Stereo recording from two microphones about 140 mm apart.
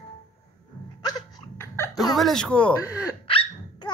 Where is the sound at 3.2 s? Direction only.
40° left (ahead or behind).